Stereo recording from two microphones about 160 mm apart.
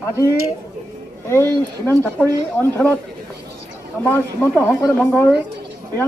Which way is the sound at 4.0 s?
15° left (ahead or behind).